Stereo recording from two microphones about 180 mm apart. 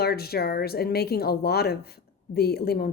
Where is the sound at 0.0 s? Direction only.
60° left (ahead or behind).